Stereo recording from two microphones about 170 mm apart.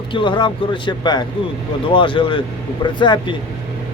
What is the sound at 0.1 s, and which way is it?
Speech, 30° left (ahead or behind).